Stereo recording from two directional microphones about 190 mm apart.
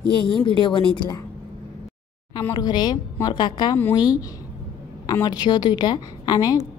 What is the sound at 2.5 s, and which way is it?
A woman's voice, 20° left (ahead or behind).